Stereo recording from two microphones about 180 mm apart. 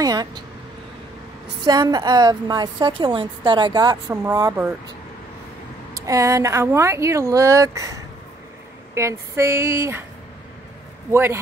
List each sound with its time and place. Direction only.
0.0 s speech: 20° right (ahead or behind)
1.6 s a woman's voice: 20° right (ahead or behind)
6.0 s speech: 20° right (ahead or behind)
11.1 s speech: 15° right (ahead or behind)